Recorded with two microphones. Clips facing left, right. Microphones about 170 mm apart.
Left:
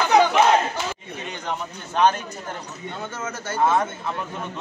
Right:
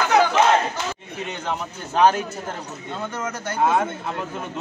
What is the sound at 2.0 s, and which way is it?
Speech, 10° right (ahead or behind).